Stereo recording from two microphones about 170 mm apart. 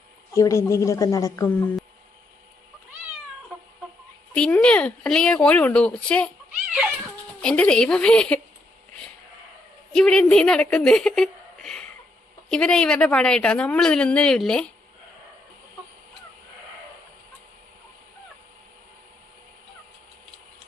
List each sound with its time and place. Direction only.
0.3 s speech: 20° left (ahead or behind)
4.4 s speech: 5° left (ahead or behind)
7.4 s speech: 5° left (ahead or behind)
9.9 s a woman's voice: 5° left (ahead or behind)